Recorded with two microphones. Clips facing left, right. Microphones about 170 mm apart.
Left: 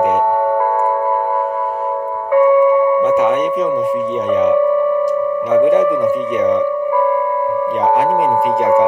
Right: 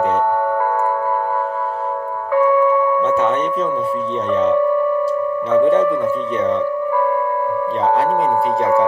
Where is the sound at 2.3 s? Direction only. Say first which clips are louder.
Left 4 dB; 10° left (ahead or behind).